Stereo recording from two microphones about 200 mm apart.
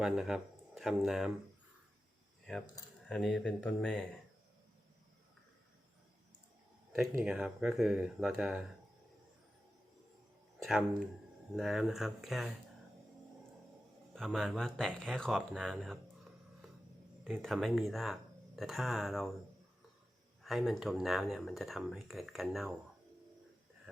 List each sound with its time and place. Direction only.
0.0 s speech: 5° right (ahead or behind)
3.1 s speech: centre (ahead or behind)
6.9 s speech: centre (ahead or behind)
10.6 s speech: centre (ahead or behind)
14.2 s speech: centre (ahead or behind)
17.4 s speech: centre (ahead or behind)
20.4 s speech: centre (ahead or behind)